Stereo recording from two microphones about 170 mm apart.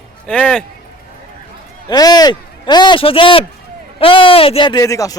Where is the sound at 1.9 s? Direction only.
25° left (ahead or behind).